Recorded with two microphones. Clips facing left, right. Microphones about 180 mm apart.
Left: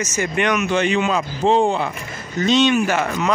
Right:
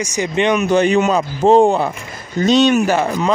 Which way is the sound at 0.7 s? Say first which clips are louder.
Right 5 dB; 40° right (ahead or behind).